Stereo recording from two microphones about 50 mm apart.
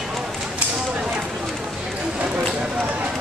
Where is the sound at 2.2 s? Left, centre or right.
Right.